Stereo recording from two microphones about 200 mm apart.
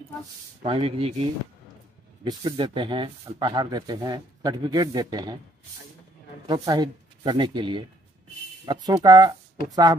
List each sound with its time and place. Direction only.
0.6 s speech: 30° right (ahead or behind)
2.2 s speech: 25° right (ahead or behind)
6.4 s speech: 20° right (ahead or behind)